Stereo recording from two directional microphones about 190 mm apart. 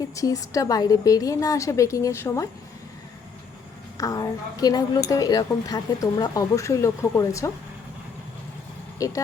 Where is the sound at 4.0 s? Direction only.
20° left (ahead or behind).